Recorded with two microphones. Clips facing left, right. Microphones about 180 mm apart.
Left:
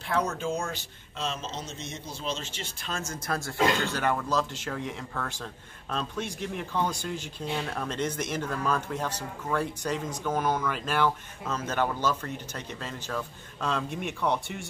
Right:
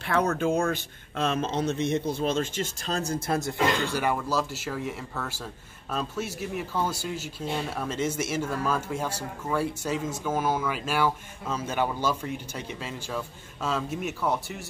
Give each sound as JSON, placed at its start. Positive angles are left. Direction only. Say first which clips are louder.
{"t": 0.0, "sound": "speech", "louder": "right 4 dB", "side_deg": -60}
{"t": 3.8, "sound": "speech", "louder": "right 1 dB", "side_deg": -10}